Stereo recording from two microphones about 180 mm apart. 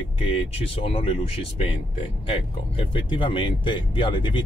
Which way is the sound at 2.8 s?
30° left (ahead or behind).